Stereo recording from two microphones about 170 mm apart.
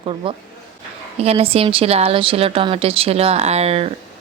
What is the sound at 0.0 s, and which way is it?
A woman's voice, 30° right (ahead or behind).